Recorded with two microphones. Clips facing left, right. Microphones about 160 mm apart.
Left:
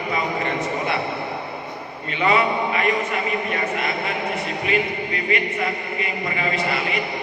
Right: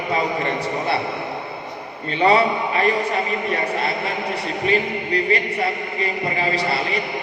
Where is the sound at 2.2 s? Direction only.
35° right (ahead or behind).